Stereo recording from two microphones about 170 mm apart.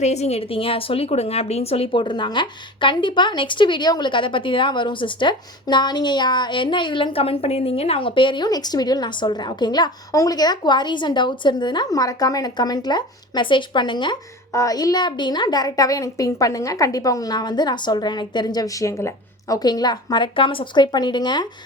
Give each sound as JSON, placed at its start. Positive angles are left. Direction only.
{"t": 0.0, "sound": "a woman's voice", "side_deg": 40}